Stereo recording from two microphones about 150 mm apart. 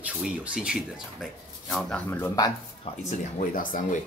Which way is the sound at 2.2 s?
25° left (ahead or behind).